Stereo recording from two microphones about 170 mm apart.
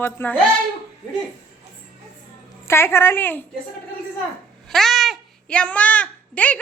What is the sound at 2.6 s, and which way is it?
Speech, 15° left (ahead or behind).